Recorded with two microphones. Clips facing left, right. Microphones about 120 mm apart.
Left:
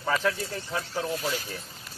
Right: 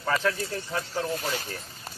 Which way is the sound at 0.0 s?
Centre (ahead or behind).